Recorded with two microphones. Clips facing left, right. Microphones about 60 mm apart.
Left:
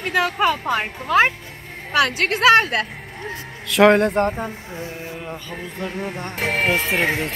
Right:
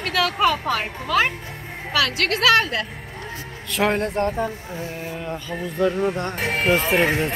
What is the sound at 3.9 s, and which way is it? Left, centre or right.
Speech, left.